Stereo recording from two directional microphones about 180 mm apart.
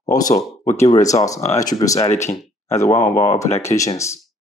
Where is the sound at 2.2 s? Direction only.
40° left (ahead or behind).